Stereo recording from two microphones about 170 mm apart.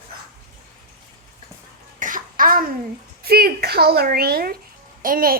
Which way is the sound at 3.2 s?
65° right (ahead or behind).